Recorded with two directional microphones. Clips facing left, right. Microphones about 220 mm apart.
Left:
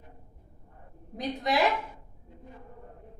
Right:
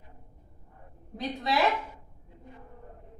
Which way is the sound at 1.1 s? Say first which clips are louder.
Left 1 dB; 15° left (ahead or behind).